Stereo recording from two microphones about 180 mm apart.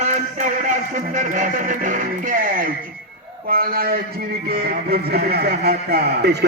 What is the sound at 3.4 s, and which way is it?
Music, 55° right (ahead or behind).